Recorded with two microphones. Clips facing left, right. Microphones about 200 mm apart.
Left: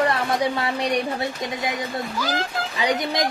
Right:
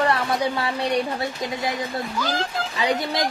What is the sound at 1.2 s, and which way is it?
Speech, 20° left (ahead or behind).